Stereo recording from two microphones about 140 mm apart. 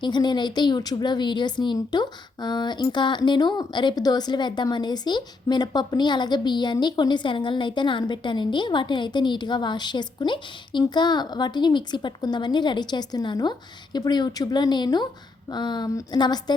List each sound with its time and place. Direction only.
0.0 s speech: 30° left (ahead or behind)